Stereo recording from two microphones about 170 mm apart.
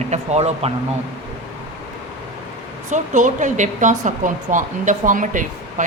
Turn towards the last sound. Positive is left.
turn(degrees=-50)  # may be behind; listen again after turning